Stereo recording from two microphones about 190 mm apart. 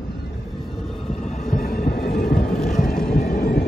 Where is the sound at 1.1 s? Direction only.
35° left (ahead or behind).